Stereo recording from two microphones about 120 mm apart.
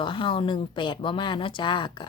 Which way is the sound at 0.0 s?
45° left (ahead or behind).